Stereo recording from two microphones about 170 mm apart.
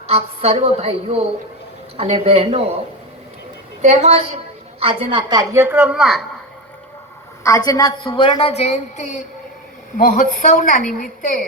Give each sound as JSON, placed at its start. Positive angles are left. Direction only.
{"t": 0.1, "sound": "a woman's voice", "side_deg": -35}
{"t": 3.8, "sound": "a woman's voice", "side_deg": -40}
{"t": 5.3, "sound": "speech", "side_deg": -20}
{"t": 7.4, "sound": "a woman's voice", "side_deg": 20}